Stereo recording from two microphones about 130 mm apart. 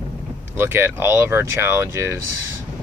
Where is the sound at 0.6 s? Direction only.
15° right (ahead or behind).